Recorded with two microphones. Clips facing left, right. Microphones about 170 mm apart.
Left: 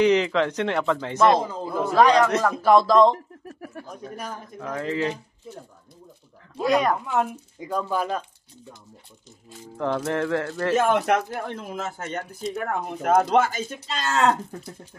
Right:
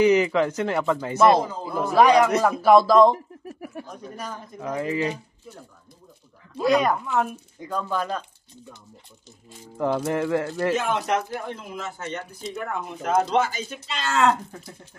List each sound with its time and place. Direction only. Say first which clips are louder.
0.0 s a man's voice: right 1 dB; 5° right (ahead or behind)
6.6 s speech: right 1 dB; centre (ahead or behind)
9.8 s speech: right 1 dB; 10° right (ahead or behind)
10.7 s speech: left 6 dB; 50° left (ahead or behind)
13.8 s speech: right 1 dB; 35° left (ahead or behind)